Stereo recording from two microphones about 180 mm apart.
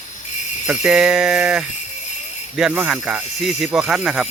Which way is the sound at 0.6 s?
5° right (ahead or behind).